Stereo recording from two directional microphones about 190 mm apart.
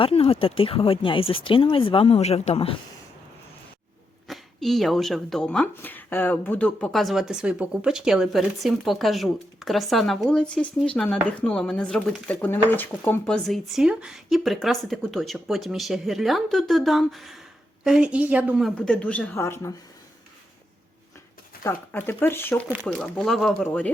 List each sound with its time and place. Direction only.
0.0 s speech: 30° left (ahead or behind)
4.3 s speech: centre (ahead or behind)
21.6 s speech: 10° left (ahead or behind)